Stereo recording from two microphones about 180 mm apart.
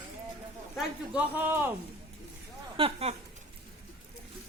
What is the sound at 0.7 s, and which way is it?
Speech, 5° right (ahead or behind).